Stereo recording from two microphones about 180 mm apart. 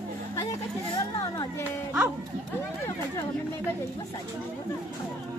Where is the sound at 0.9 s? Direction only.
20° left (ahead or behind).